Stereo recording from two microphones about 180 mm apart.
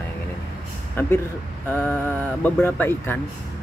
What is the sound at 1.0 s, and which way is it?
Speech, 10° left (ahead or behind).